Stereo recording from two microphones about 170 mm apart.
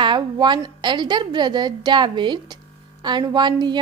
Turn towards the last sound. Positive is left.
turn(degrees=-25)  # may be behind; listen again after turning